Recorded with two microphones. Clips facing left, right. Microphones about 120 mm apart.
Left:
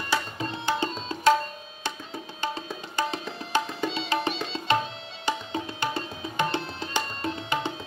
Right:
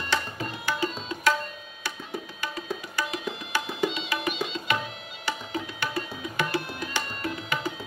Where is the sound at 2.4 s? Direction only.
25° left (ahead or behind).